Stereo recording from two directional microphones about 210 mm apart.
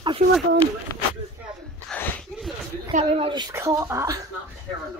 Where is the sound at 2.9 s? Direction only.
25° right (ahead or behind).